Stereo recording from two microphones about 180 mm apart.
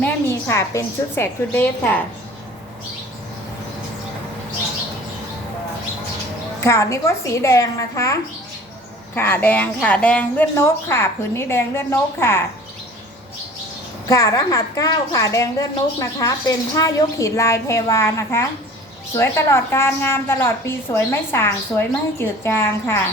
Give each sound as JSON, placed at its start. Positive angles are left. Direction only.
{"t": 0.0, "sound": "a woman's voice", "side_deg": 15}
{"t": 6.6, "sound": "a woman's voice", "side_deg": 15}
{"t": 14.1, "sound": "a woman's voice", "side_deg": 20}